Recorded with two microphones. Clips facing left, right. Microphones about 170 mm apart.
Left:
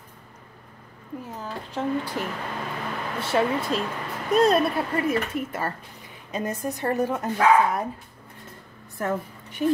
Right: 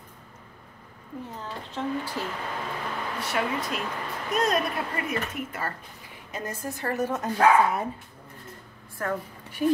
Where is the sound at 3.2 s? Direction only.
30° left (ahead or behind); by 7.3 s 10° left (ahead or behind).